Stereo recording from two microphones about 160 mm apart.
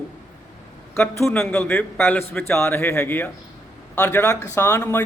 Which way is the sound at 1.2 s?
15° left (ahead or behind).